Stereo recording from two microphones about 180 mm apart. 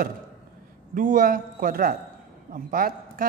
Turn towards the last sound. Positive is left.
turn(degrees=-55)  # may be behind; listen again after turning